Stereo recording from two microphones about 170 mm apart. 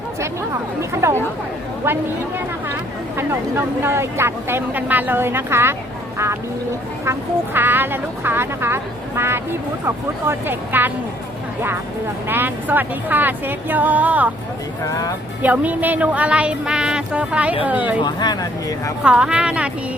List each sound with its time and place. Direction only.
0.8 s speech: 15° right (ahead or behind)
3.2 s speech: 15° right (ahead or behind)
7.0 s speech: 15° right (ahead or behind)
12.3 s speech: 10° right (ahead or behind)
14.8 s speech: 20° left (ahead or behind)
15.4 s speech: 10° right (ahead or behind)
18.0 s speech: 25° left (ahead or behind)
19.0 s speech: 5° right (ahead or behind)